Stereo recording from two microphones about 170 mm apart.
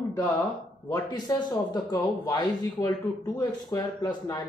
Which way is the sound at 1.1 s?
25° left (ahead or behind).